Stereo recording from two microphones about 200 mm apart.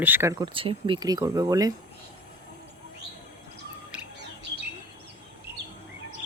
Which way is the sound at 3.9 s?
5° right (ahead or behind).